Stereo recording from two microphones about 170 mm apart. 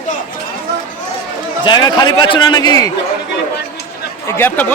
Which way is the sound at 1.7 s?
25° left (ahead or behind).